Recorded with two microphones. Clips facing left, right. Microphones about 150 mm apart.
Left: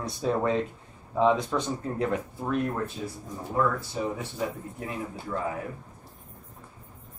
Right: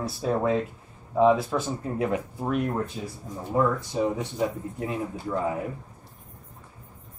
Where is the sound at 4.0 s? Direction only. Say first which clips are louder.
Right 7 dB; 20° right (ahead or behind).